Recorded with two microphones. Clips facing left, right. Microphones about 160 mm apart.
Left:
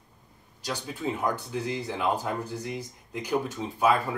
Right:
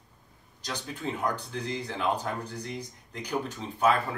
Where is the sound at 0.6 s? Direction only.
10° left (ahead or behind).